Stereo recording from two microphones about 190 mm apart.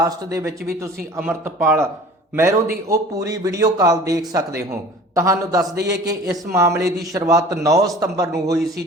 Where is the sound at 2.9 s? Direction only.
15° right (ahead or behind).